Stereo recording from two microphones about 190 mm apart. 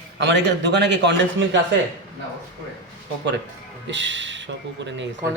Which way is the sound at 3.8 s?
75° right (ahead or behind).